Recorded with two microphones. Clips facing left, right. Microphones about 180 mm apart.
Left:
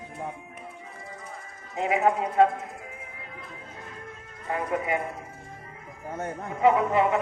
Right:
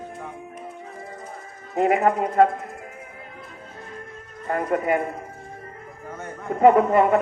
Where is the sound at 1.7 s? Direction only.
50° right (ahead or behind).